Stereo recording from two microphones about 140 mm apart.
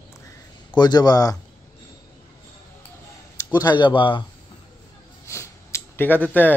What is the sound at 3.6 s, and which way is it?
Speech, 30° left (ahead or behind).